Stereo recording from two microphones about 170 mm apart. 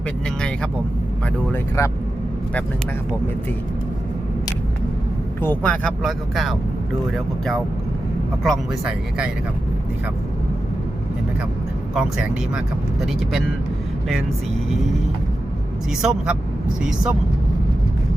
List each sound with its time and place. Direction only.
1.5 s speech: 15° left (ahead or behind)
5.4 s speech: 10° left (ahead or behind)
8.4 s speech: 5° right (ahead or behind)
11.9 s speech: 5° right (ahead or behind)
15.9 s speech: 5° right (ahead or behind)